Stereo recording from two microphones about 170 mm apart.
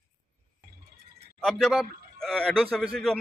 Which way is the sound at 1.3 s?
Centre (ahead or behind).